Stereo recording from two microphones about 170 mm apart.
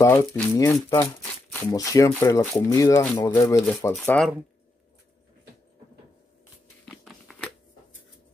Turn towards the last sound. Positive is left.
turn(degrees=0)  # may be behind; listen again after turning